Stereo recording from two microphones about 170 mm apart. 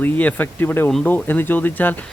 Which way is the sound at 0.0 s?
10° left (ahead or behind).